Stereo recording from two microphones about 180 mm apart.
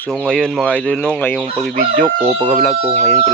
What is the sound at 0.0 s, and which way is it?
Speech, 5° left (ahead or behind).